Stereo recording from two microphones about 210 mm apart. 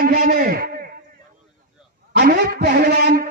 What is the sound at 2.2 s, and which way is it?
A man's voice, 45° right (ahead or behind).